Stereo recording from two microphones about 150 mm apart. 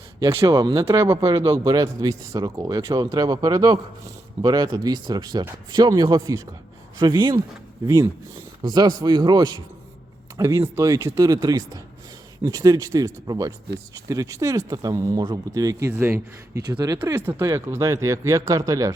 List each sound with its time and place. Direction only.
0.2 s speech: 20° right (ahead or behind)
17.2 s speech: 15° right (ahead or behind)